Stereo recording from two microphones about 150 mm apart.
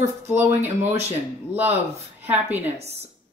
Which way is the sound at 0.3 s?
15° right (ahead or behind).